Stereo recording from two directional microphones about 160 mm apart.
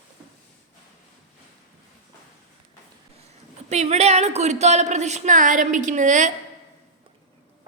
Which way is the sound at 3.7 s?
40° right (ahead or behind).